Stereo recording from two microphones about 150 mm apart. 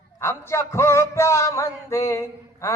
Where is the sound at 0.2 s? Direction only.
20° left (ahead or behind).